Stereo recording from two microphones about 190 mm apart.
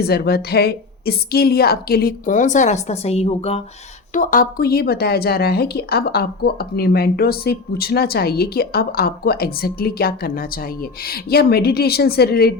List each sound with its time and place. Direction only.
0.0 s a woman's voice: 55° left (ahead or behind); by 3.6 s 30° left (ahead or behind)
4.1 s speech: 45° left (ahead or behind)